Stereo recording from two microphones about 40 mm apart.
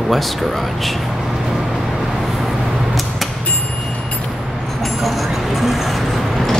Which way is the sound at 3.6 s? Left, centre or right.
Centre.